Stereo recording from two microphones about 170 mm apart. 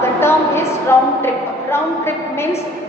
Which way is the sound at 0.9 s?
15° left (ahead or behind).